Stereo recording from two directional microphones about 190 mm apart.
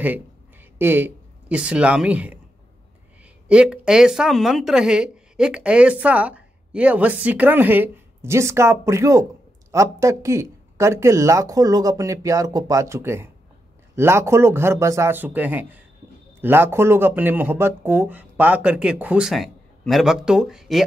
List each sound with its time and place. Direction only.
0.7 s speech: 10° right (ahead or behind)
3.4 s a woman's voice: 5° right (ahead or behind)